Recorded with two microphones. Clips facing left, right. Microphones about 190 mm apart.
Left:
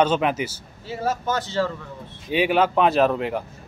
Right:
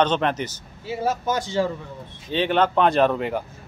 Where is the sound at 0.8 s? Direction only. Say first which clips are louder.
Right 1 dB; 10° right (ahead or behind).